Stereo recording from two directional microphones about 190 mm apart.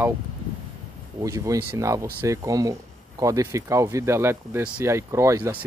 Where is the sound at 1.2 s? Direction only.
15° right (ahead or behind).